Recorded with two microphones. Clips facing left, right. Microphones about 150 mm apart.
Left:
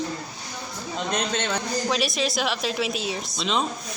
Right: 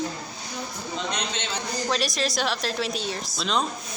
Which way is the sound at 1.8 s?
Centre (ahead or behind).